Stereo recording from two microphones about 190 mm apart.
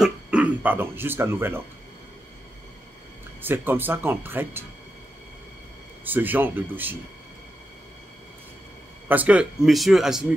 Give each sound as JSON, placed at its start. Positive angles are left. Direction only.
{"t": 0.0, "sound": "speech", "side_deg": -5}
{"t": 3.4, "sound": "speech", "side_deg": -10}
{"t": 6.0, "sound": "speech", "side_deg": -10}
{"t": 9.1, "sound": "speech", "side_deg": -10}